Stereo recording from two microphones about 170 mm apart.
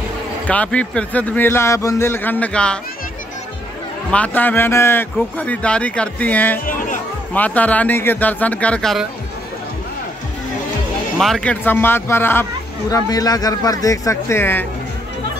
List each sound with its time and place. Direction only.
0.5 s a man's voice: 10° left (ahead or behind)
4.1 s a man's voice: 10° left (ahead or behind)
11.1 s a man's voice: centre (ahead or behind)